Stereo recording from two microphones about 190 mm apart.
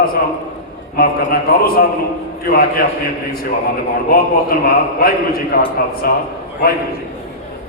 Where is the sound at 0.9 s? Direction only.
50° left (ahead or behind).